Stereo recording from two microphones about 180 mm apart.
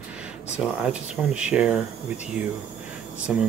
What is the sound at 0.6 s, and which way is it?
Speech, 5° right (ahead or behind).